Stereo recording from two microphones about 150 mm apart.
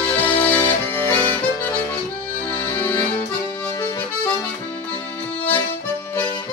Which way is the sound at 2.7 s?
15° left (ahead or behind).